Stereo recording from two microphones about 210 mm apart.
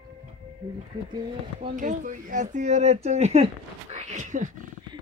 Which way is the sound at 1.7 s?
40° right (ahead or behind).